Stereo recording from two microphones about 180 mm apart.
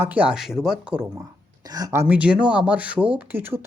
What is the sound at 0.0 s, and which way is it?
Speech, 10° right (ahead or behind).